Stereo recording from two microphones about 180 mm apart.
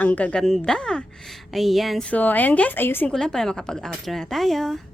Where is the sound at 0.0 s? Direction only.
10° left (ahead or behind).